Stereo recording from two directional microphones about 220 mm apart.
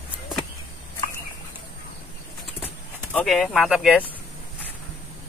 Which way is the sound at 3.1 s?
Centre (ahead or behind).